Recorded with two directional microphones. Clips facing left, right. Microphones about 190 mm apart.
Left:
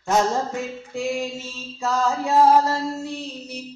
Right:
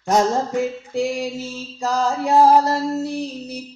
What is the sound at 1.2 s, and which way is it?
Mantra, 35° right (ahead or behind).